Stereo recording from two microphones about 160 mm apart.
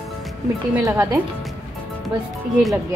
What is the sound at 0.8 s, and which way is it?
Speech, 15° right (ahead or behind).